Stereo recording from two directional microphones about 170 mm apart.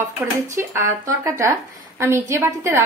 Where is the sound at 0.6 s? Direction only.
15° right (ahead or behind).